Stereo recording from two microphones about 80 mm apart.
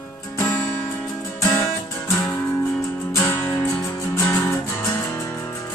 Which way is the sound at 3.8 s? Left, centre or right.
Left.